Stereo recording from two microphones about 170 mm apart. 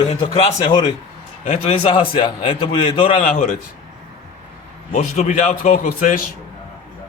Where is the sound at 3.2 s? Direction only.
50° left (ahead or behind).